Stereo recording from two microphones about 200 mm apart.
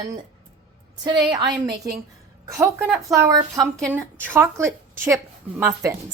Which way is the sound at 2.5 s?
15° right (ahead or behind).